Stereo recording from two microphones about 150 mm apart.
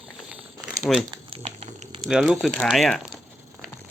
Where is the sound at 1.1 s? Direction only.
40° right (ahead or behind).